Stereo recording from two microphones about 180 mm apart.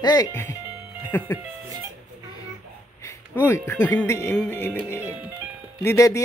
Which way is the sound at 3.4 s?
10° left (ahead or behind).